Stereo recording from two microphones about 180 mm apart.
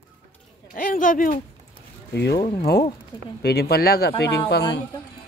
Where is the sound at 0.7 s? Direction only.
50° left (ahead or behind).